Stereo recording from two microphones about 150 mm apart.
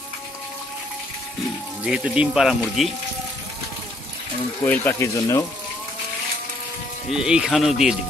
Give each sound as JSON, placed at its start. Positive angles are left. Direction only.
{"t": 1.8, "sound": "speech", "side_deg": -5}
{"t": 4.6, "sound": "speech", "side_deg": 10}
{"t": 7.1, "sound": "speech", "side_deg": -5}